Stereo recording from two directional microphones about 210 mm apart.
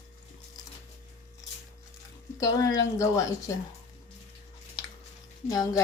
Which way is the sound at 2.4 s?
15° left (ahead or behind).